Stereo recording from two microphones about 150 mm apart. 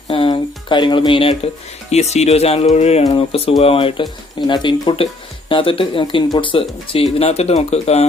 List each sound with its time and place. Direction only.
0.1 s speech: 35° left (ahead or behind)